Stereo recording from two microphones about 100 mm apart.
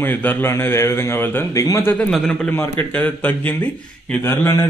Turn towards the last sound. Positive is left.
turn(degrees=25)  # may be behind; listen again after turning